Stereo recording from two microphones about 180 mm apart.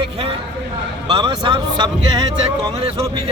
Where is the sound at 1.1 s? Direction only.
25° right (ahead or behind).